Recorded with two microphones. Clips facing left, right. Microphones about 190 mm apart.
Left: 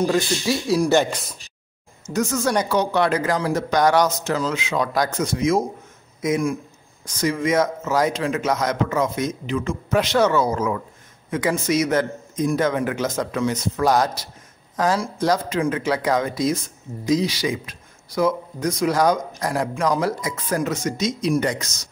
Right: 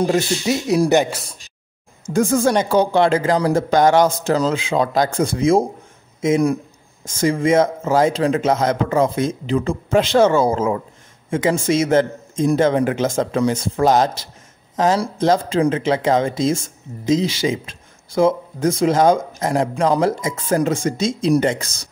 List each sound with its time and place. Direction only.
0.0 s a man's voice: 20° right (ahead or behind)
2.0 s a man's voice: 30° right (ahead or behind)